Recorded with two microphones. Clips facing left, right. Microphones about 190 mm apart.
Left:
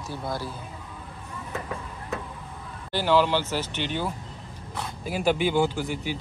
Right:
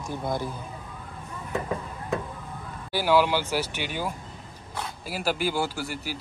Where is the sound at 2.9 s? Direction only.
10° right (ahead or behind).